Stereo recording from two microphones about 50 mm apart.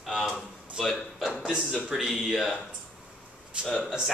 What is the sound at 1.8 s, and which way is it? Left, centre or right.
Speech, centre.